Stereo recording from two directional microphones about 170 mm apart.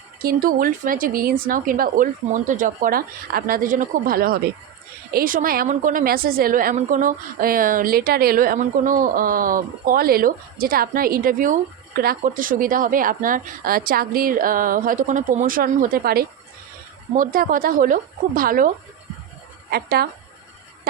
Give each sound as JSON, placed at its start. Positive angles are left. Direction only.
{"t": 0.2, "sound": "a woman's voice", "side_deg": -60}
{"t": 19.7, "sound": "a woman's voice", "side_deg": -65}